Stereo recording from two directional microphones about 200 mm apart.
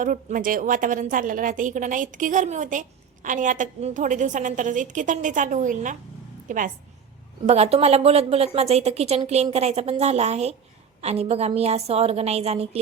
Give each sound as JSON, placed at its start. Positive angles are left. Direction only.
{"t": 0.0, "sound": "a woman's voice", "side_deg": -40}